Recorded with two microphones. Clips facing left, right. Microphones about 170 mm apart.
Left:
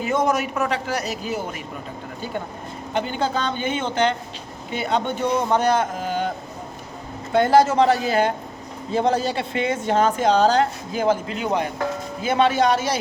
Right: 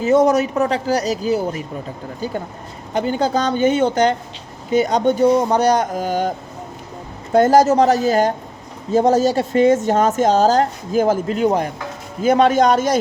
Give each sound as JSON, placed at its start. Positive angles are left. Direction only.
{"t": 0.0, "sound": "a woman's voice", "side_deg": -35}
{"t": 2.9, "sound": "a woman's voice", "side_deg": -40}
{"t": 7.3, "sound": "a woman's voice", "side_deg": -40}